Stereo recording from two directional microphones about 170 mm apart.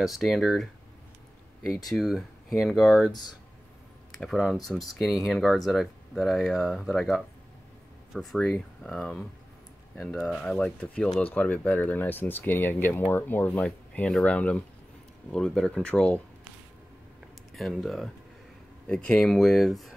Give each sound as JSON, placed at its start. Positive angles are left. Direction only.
{"t": 0.0, "sound": "speech", "side_deg": 0}
{"t": 1.9, "sound": "speech", "side_deg": 0}
{"t": 4.2, "sound": "speech", "side_deg": 0}
{"t": 17.6, "sound": "speech", "side_deg": 0}